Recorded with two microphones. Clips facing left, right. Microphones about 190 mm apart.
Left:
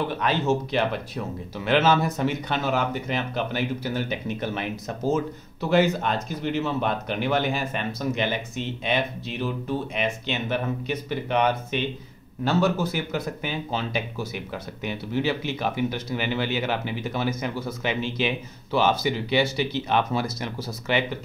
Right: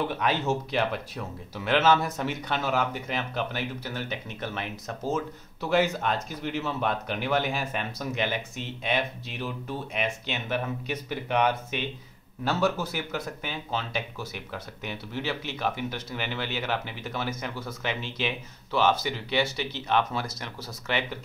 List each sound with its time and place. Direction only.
0.1 s speech: 10° right (ahead or behind)